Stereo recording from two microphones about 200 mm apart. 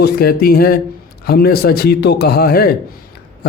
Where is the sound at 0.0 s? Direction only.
50° left (ahead or behind).